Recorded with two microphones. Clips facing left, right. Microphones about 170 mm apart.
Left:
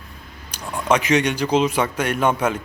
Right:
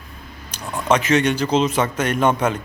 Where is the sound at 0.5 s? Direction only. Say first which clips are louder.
Right 1 dB; 10° left (ahead or behind).